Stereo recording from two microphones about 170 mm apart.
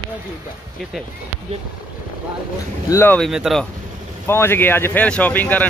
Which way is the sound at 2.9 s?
15° left (ahead or behind).